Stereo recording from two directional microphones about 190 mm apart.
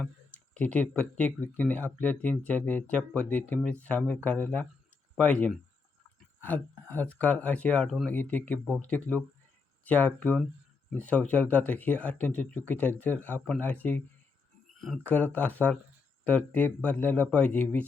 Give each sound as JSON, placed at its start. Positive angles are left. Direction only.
{"t": 0.5, "sound": "speech", "side_deg": 5}